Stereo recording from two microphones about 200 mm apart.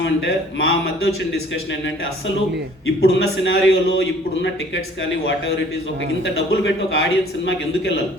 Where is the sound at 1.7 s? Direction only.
65° left (ahead or behind).